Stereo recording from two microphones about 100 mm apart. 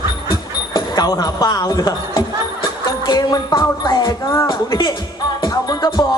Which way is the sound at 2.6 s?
45° left (ahead or behind).